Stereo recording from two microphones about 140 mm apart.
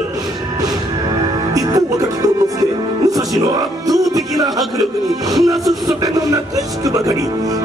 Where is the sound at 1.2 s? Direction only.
25° right (ahead or behind).